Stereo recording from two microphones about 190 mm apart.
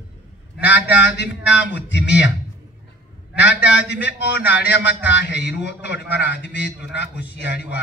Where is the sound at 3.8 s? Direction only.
65° left (ahead or behind).